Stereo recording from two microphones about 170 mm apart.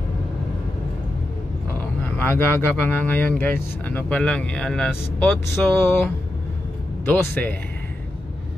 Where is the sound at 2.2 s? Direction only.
10° left (ahead or behind).